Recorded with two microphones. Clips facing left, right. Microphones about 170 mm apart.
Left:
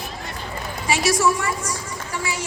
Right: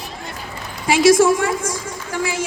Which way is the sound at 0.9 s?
90° right.